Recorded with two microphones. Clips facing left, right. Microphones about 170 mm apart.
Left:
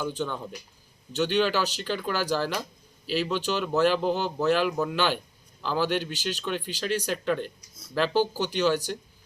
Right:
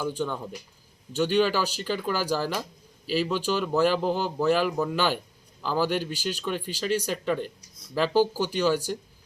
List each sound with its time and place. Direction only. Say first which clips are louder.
0.0 s speech: right 1 dB; 10° right (ahead or behind)